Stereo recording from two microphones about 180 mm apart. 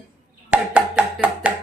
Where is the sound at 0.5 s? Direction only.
5° right (ahead or behind).